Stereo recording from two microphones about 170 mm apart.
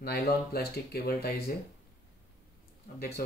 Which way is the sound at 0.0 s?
65° left (ahead or behind).